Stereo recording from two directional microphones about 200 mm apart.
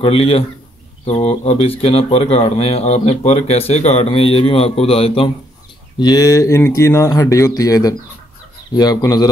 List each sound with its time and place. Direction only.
0.0 s speech: 30° left (ahead or behind)